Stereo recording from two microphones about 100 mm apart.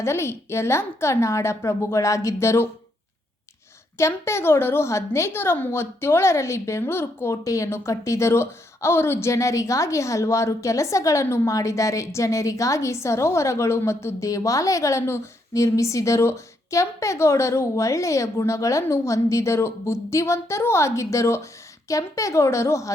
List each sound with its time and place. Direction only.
0.0 s a woman's voice: 25° left (ahead or behind)
3.9 s a woman's voice: 30° left (ahead or behind)